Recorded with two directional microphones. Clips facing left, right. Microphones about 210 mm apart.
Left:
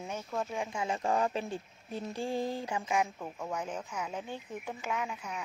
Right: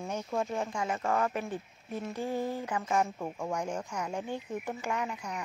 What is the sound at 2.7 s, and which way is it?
Speech, 15° left (ahead or behind).